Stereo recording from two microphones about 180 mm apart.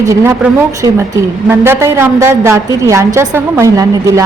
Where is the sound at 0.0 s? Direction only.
15° right (ahead or behind).